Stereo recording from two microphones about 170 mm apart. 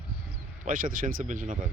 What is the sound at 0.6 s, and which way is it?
Speech, 55° right (ahead or behind).